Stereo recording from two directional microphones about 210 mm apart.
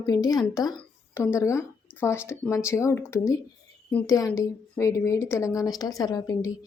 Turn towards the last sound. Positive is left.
turn(degrees=15)  # may be behind; listen again after turning